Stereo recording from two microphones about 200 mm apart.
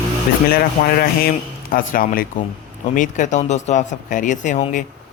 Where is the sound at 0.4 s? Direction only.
50° left (ahead or behind).